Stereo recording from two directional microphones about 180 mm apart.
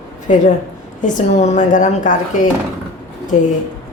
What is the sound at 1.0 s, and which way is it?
Speech, 40° left (ahead or behind).